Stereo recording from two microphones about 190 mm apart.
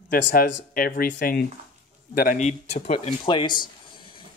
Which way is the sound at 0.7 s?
50° left (ahead or behind).